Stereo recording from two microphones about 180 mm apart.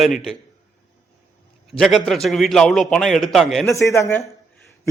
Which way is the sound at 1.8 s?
Centre (ahead or behind).